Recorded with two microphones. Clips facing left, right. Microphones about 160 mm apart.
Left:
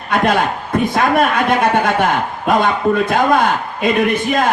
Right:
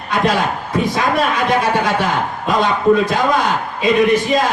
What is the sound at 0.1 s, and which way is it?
A man's voice, 55° left (ahead or behind).